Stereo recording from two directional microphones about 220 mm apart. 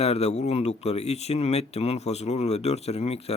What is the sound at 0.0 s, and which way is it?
Speech, 30° left (ahead or behind).